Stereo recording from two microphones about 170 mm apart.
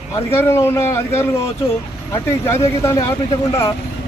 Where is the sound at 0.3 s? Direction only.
15° left (ahead or behind).